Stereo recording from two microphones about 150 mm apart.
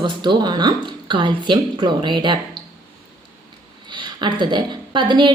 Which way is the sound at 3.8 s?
30° right (ahead or behind).